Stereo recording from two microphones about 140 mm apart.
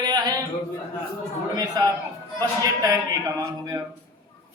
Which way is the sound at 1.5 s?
25° right (ahead or behind).